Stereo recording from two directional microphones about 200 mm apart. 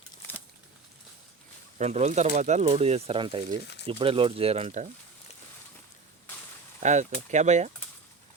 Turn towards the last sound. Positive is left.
turn(degrees=-35)  # may be behind; listen again after turning